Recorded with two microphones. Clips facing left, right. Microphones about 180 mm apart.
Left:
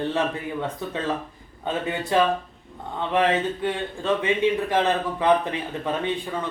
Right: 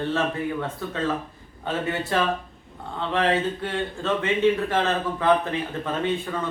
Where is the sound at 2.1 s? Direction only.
15° left (ahead or behind).